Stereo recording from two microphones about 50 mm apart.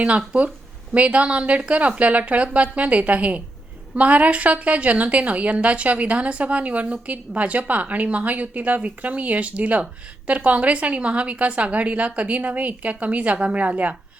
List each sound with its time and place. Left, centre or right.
0.9 s a woman's voice: right